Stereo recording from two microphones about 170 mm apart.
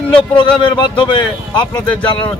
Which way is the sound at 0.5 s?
30° left (ahead or behind).